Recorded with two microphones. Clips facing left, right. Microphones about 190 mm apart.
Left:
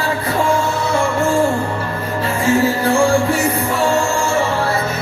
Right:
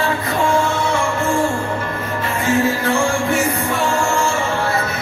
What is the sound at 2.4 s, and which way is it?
Music, 35° left (ahead or behind).